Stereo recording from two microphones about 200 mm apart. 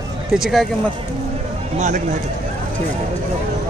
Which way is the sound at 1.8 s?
40° right (ahead or behind).